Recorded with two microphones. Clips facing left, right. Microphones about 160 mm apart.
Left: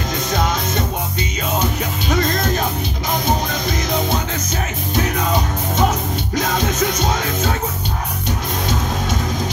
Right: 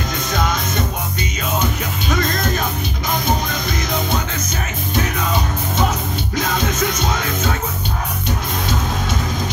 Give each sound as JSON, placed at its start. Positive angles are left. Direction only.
{"t": 0.3, "sound": "music", "side_deg": 35}
{"t": 2.0, "sound": "music", "side_deg": 35}
{"t": 4.9, "sound": "music", "side_deg": 40}